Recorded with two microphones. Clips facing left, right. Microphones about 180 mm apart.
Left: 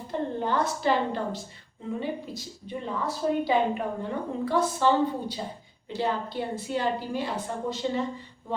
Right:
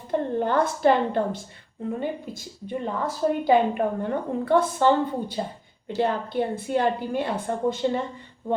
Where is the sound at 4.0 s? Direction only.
55° right (ahead or behind).